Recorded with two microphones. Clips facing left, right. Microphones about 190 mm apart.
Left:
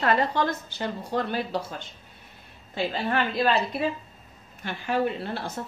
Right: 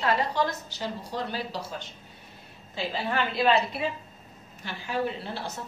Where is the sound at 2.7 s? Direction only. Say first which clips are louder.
Left 3 dB; 55° left (ahead or behind).